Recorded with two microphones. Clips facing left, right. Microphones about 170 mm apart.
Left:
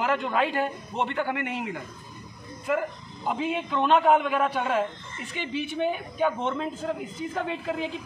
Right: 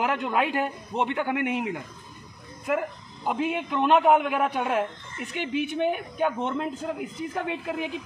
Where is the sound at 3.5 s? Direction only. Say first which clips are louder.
Even; 15° right (ahead or behind).